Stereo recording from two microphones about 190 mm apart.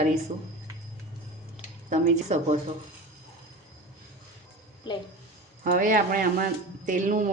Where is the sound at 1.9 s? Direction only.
40° right (ahead or behind).